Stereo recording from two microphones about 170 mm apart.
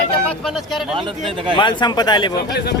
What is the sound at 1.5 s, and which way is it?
Speech, 25° left (ahead or behind).